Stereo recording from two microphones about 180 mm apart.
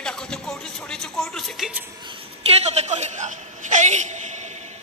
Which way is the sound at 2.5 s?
35° right (ahead or behind).